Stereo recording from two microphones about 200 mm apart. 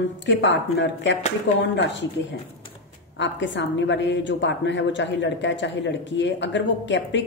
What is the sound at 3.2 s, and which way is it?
A woman's voice, 65° left (ahead or behind).